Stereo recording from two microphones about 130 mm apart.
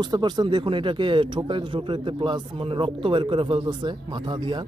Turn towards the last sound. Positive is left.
turn(degrees=-35)  # may be behind; listen again after turning